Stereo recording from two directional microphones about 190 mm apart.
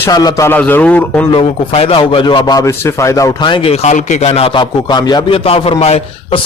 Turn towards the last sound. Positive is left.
turn(degrees=35)  # may be behind; listen again after turning